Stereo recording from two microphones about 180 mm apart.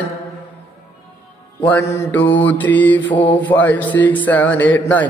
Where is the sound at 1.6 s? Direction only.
10° left (ahead or behind).